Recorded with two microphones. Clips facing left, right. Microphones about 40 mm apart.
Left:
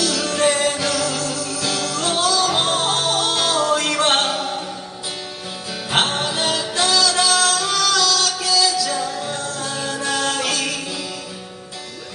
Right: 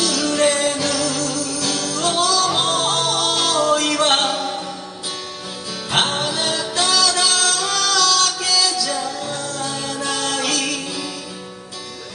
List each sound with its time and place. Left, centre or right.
0.2 s music: centre
5.9 s music: centre
8.6 s music: centre
9.3 s music: left
9.7 s music: centre